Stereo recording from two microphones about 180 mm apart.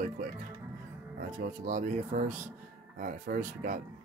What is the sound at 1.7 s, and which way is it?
Speech, 45° right (ahead or behind).